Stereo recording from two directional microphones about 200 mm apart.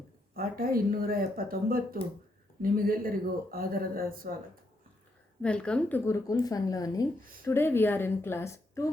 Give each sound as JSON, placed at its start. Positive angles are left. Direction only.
{"t": 0.3, "sound": "speech", "side_deg": -45}
{"t": 5.4, "sound": "speech", "side_deg": 5}